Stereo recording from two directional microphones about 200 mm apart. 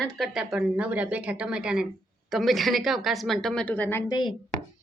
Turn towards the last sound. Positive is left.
turn(degrees=20)  # may be behind; listen again after turning